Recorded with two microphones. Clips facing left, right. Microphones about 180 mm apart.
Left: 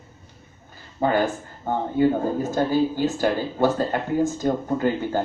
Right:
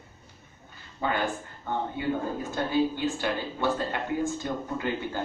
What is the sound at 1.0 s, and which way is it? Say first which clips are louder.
A man's voice: left 7 dB; 40° left (ahead or behind).